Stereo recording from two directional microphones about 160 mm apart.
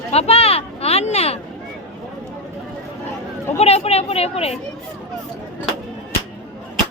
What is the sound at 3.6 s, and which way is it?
Speech, 40° left (ahead or behind).